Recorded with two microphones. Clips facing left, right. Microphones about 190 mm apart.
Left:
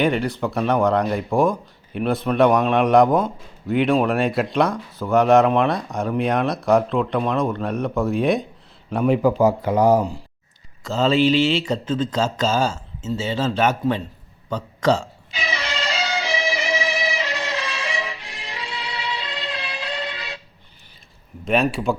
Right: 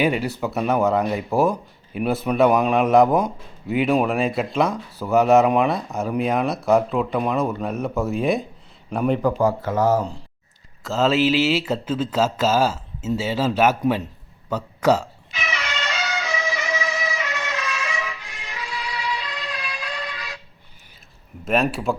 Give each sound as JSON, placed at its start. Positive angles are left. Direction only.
{"t": 0.0, "sound": "speech", "side_deg": -5}
{"t": 10.8, "sound": "a man's voice", "side_deg": 0}
{"t": 15.3, "sound": "music", "side_deg": 30}
{"t": 21.4, "sound": "speech", "side_deg": 0}